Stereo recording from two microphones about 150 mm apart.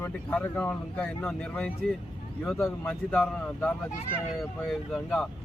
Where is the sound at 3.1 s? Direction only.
5° left (ahead or behind).